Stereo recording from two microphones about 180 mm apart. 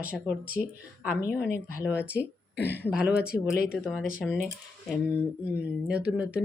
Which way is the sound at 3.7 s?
5° right (ahead or behind).